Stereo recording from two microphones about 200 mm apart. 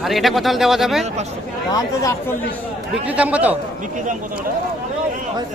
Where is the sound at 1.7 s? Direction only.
15° left (ahead or behind).